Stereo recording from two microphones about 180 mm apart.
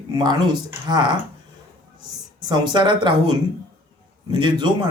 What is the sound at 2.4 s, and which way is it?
Speech, 25° right (ahead or behind).